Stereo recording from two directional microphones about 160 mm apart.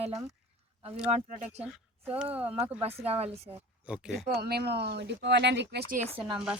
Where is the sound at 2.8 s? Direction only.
40° right (ahead or behind).